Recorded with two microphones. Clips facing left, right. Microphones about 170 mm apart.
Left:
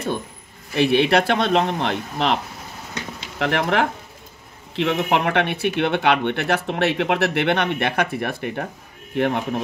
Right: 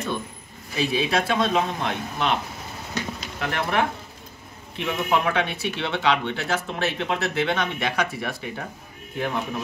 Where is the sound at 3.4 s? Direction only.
90° left.